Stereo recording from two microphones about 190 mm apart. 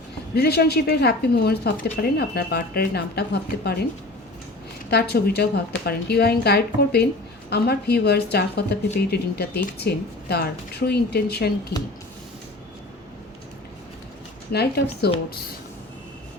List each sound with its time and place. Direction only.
0.3 s a woman's voice: 55° left (ahead or behind)
4.9 s a woman's voice: 55° left (ahead or behind)
14.5 s a woman's voice: 60° left (ahead or behind)